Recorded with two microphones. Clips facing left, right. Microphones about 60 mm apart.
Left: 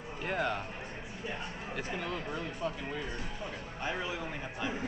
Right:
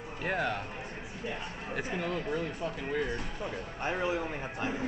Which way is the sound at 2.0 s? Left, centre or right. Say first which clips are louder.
Right 6 dB; right.